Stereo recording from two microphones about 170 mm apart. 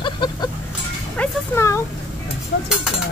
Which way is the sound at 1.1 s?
10° left (ahead or behind).